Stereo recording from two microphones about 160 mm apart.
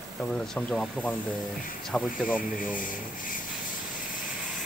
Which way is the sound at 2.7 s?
60° left (ahead or behind).